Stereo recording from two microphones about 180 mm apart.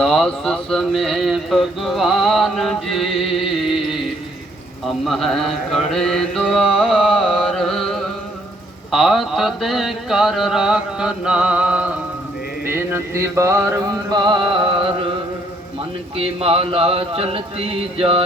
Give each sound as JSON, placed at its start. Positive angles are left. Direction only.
{"t": 0.0, "sound": "mantra", "side_deg": 0}
{"t": 5.0, "sound": "mantra", "side_deg": 0}
{"t": 16.1, "sound": "speech", "side_deg": -30}